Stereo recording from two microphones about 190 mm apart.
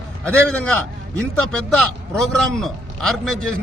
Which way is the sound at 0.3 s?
5° left (ahead or behind).